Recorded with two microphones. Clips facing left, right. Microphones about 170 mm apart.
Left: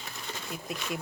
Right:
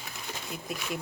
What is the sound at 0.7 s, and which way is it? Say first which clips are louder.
Speech: even; 5° right (ahead or behind).